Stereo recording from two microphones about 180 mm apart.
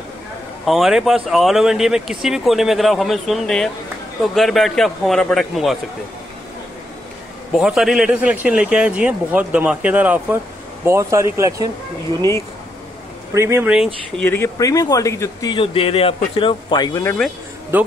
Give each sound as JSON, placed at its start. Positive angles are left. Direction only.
{"t": 0.7, "sound": "speech", "side_deg": 0}
{"t": 7.5, "sound": "speech", "side_deg": 0}
{"t": 13.3, "sound": "speech", "side_deg": -15}
{"t": 14.1, "sound": "speech", "side_deg": 10}
{"t": 15.5, "sound": "speech", "side_deg": 30}
{"t": 17.7, "sound": "speech", "side_deg": -10}